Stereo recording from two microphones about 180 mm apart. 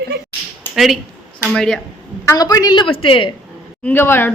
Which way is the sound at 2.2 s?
20° left (ahead or behind).